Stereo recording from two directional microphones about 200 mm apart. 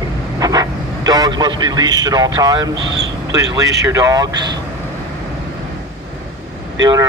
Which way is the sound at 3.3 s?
15° right (ahead or behind).